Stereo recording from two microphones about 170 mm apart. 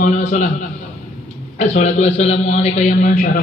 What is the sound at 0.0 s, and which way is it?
Speech, 45° left (ahead or behind).